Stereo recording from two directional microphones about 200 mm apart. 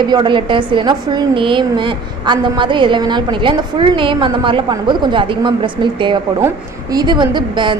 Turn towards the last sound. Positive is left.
turn(degrees=-25)  # may be behind; listen again after turning